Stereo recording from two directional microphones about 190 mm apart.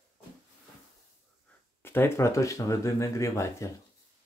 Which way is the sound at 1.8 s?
10° left (ahead or behind).